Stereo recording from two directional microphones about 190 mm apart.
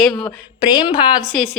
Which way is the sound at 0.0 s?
5° left (ahead or behind).